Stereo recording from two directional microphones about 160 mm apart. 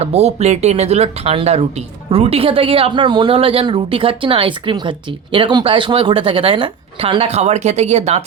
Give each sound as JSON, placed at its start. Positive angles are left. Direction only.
{"t": 0.0, "sound": "speech", "side_deg": -40}